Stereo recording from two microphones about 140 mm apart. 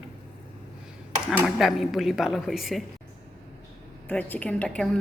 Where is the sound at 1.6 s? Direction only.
Centre (ahead or behind).